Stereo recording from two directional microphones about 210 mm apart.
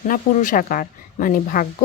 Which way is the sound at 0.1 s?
40° left (ahead or behind).